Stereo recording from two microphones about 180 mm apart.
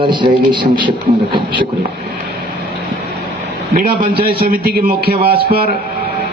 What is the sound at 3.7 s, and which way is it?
A man's voice, 50° right (ahead or behind).